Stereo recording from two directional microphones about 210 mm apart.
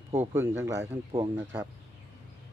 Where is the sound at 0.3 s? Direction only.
10° right (ahead or behind).